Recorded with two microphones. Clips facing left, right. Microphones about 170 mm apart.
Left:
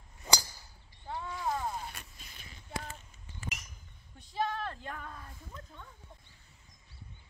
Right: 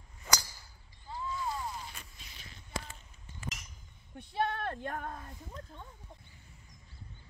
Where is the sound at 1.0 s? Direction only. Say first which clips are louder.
Left 1 dB; 65° left (ahead or behind).